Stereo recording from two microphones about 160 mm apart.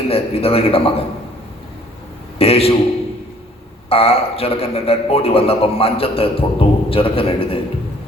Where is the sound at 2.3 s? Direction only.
35° left (ahead or behind).